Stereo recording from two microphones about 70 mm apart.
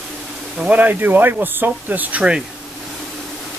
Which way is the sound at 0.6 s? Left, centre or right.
Right.